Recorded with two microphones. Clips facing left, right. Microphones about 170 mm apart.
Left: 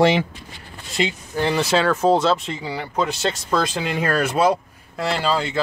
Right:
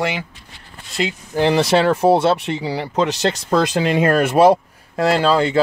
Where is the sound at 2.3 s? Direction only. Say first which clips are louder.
Right 3 dB; 70° right (ahead or behind).